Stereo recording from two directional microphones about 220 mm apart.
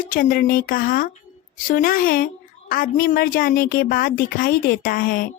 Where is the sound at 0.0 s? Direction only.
40° left (ahead or behind).